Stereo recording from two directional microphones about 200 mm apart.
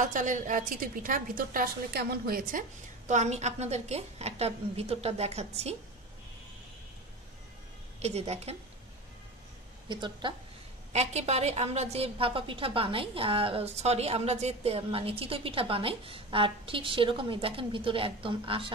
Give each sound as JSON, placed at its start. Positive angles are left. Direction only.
{"t": 0.0, "sound": "a woman's voice", "side_deg": -40}
{"t": 3.1, "sound": "a woman's voice", "side_deg": -35}
{"t": 8.0, "sound": "a woman's voice", "side_deg": -30}
{"t": 9.8, "sound": "a woman's voice", "side_deg": -25}